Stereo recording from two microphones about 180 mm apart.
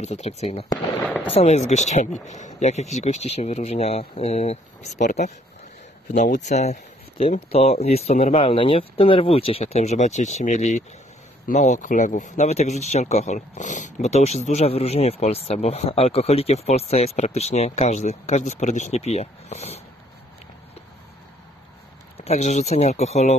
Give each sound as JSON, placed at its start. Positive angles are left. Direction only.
{"t": 0.0, "sound": "speech", "side_deg": 40}
{"t": 6.4, "sound": "speech", "side_deg": 40}
{"t": 22.1, "sound": "speech", "side_deg": 35}